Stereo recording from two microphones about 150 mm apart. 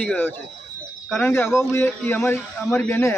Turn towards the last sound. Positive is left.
turn(degrees=15)  # may be behind; listen again after turning